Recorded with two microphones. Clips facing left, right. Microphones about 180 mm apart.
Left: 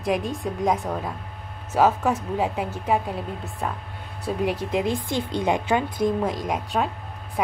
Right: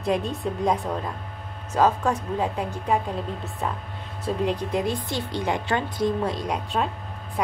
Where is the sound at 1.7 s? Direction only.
5° left (ahead or behind).